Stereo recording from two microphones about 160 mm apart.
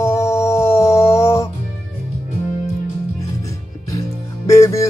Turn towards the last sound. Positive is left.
turn(degrees=20)  # may be behind; listen again after turning